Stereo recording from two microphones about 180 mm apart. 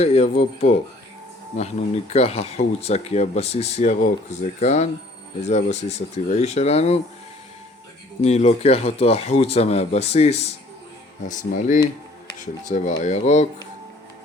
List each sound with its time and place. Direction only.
0.0 s speech: 35° left (ahead or behind)
8.2 s speech: 35° left (ahead or behind)
11.3 s speech: 45° left (ahead or behind)